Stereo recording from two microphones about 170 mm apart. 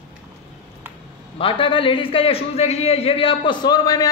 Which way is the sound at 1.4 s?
30° left (ahead or behind).